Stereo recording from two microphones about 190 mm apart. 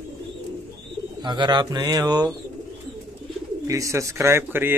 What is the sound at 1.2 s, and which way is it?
A man's voice, 25° right (ahead or behind).